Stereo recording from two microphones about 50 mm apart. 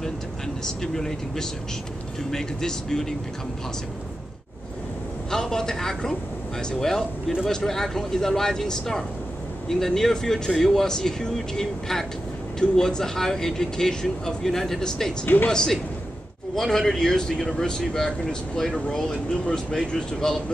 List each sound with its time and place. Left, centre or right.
0.7 s speech: centre
5.3 s speech: centre
15.2 s speech: left
15.5 s speech: centre